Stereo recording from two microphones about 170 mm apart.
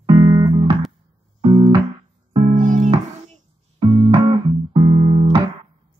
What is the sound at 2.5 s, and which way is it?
Music, 50° right (ahead or behind).